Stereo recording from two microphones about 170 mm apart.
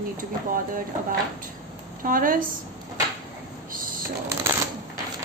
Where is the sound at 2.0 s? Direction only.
55° right (ahead or behind).